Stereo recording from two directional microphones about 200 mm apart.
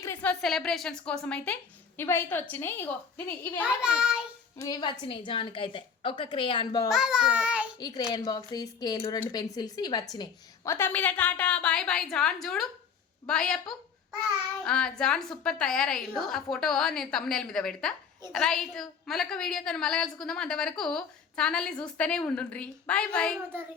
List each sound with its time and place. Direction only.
0.0 s a woman's voice: 10° left (ahead or behind)
3.6 s a woman's voice: 5° right (ahead or behind)
4.5 s a woman's voice: 20° left (ahead or behind)
6.9 s a child's voice: 5° right (ahead or behind)
7.8 s a woman's voice: 20° left (ahead or behind); by 23.4 s 5° left (ahead or behind)